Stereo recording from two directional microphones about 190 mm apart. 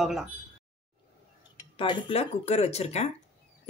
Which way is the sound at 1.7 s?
25° left (ahead or behind).